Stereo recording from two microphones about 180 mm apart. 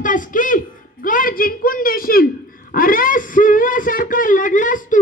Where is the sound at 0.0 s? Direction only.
45° left (ahead or behind).